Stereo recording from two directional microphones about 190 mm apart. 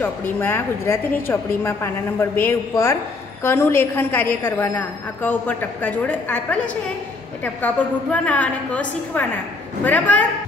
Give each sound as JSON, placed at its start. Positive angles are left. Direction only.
{"t": 0.0, "sound": "a woman's voice", "side_deg": 10}